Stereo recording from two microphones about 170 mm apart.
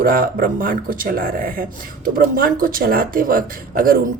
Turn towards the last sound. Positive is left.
turn(degrees=-55)  # may be behind; listen again after turning